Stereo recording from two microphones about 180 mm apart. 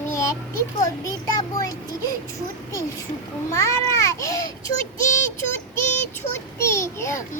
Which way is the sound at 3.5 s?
15° left (ahead or behind).